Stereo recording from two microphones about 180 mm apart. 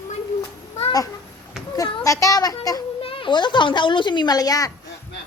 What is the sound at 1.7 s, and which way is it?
A child's voice, 20° left (ahead or behind).